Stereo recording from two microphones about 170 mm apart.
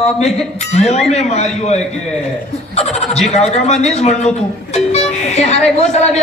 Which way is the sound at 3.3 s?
40° left (ahead or behind).